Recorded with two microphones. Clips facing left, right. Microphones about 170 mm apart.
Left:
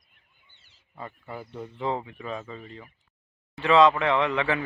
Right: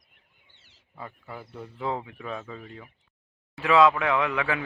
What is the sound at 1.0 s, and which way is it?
Speech, centre (ahead or behind).